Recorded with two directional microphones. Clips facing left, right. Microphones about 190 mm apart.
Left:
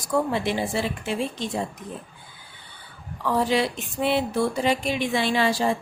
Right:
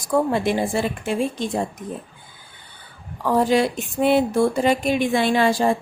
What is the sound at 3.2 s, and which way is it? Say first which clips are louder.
A woman's voice: right 4 dB; 45° right (ahead or behind).